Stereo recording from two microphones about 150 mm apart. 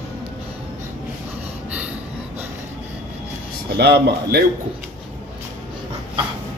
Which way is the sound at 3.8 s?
90° right.